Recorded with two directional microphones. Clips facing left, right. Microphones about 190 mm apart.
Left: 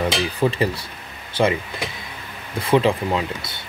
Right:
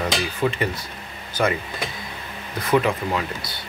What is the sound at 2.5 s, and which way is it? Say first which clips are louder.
Speech: left 3 dB; 30° left (ahead or behind).